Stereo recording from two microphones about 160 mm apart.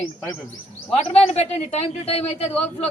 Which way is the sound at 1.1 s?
40° left (ahead or behind).